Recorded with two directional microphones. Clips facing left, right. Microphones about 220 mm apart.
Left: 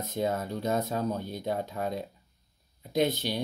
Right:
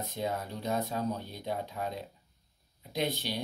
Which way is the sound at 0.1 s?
45° left (ahead or behind).